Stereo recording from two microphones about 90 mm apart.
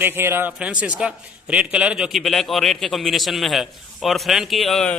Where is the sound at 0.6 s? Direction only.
10° right (ahead or behind).